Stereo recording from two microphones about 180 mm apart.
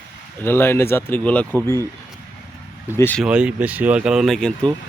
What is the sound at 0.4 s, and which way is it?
Speech, 15° left (ahead or behind).